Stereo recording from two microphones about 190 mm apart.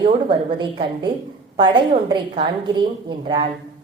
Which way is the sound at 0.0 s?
25° right (ahead or behind).